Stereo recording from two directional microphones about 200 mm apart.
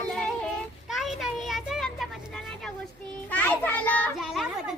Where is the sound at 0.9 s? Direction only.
Centre (ahead or behind).